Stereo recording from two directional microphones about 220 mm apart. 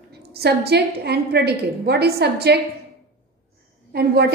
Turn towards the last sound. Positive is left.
turn(degrees=-45)  # may be behind; listen again after turning